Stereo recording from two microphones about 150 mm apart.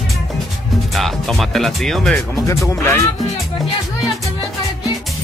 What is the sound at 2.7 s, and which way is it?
Speech, 20° left (ahead or behind).